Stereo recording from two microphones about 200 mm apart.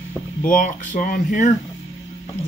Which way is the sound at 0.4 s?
40° left (ahead or behind).